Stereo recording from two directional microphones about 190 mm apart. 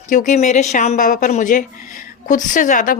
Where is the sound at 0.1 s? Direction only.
40° left (ahead or behind).